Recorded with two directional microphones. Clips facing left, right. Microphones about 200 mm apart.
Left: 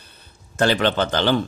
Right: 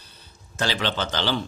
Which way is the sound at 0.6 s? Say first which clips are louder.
Left 7 dB; 55° left (ahead or behind).